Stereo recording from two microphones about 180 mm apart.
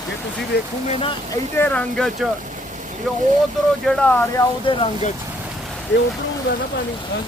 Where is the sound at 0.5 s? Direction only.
70° left (ahead or behind).